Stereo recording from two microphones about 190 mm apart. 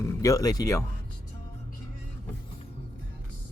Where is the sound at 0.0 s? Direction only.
15° left (ahead or behind).